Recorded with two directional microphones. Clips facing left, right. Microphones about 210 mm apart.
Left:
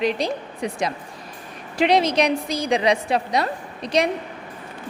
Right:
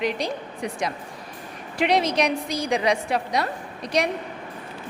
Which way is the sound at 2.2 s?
25° left (ahead or behind).